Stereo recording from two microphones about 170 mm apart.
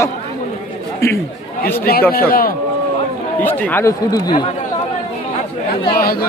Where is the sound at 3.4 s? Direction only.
10° left (ahead or behind).